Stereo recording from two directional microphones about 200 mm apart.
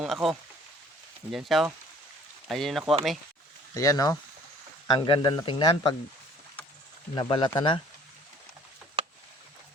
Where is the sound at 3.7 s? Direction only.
15° left (ahead or behind).